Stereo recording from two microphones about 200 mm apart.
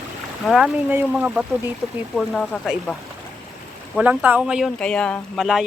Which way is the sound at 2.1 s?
5° left (ahead or behind).